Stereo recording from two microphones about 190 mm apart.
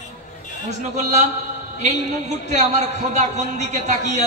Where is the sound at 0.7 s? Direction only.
40° right (ahead or behind).